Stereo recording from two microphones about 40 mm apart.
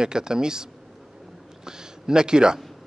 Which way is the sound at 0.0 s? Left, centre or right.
Centre.